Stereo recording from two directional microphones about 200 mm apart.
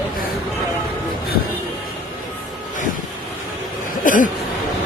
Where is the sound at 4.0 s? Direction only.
40° left (ahead or behind).